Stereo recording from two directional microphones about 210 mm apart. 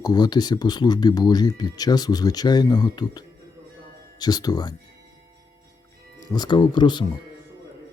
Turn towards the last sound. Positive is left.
turn(degrees=20)  # may be behind; listen again after turning